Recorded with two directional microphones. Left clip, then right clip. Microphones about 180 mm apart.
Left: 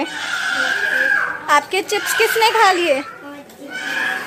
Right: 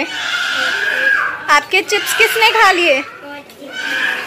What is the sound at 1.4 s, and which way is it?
A woman's voice, 15° left (ahead or behind).